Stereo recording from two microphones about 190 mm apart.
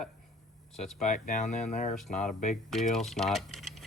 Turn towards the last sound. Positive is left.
turn(degrees=0)  # may be behind; listen again after turning